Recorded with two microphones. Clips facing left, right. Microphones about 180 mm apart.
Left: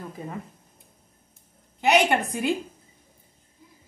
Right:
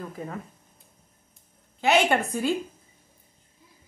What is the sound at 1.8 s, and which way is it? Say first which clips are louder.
Speech: left 1 dB; 15° left (ahead or behind).